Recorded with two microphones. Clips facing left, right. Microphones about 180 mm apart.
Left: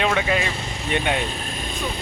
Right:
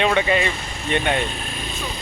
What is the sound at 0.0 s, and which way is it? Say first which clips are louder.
A man's voice: right 3 dB; centre (ahead or behind).